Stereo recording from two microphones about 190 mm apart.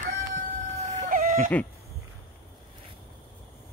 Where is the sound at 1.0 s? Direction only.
45° right (ahead or behind).